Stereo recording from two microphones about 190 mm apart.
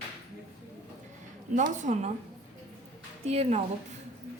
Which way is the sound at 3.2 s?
35° right (ahead or behind).